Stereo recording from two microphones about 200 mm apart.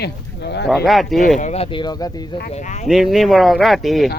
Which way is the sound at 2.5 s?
35° left (ahead or behind).